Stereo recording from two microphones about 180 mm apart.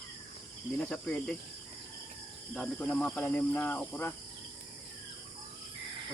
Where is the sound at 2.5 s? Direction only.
5° left (ahead or behind).